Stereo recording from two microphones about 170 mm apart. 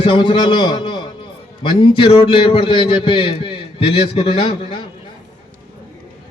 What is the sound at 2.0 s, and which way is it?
A man's voice, 30° left (ahead or behind).